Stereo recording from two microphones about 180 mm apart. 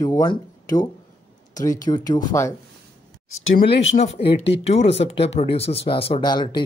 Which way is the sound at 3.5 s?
65° left (ahead or behind).